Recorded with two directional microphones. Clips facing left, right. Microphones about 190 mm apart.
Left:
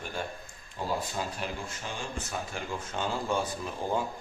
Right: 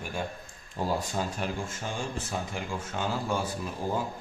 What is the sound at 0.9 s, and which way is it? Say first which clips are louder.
Speech: right 3 dB; 45° right (ahead or behind).